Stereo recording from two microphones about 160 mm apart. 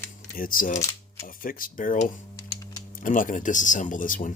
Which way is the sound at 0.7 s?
20° left (ahead or behind).